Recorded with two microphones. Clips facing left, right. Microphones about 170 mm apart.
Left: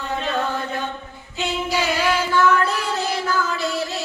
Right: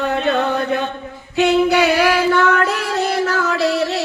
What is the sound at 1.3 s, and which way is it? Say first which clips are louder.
Music: right 10 dB; 70° right (ahead or behind).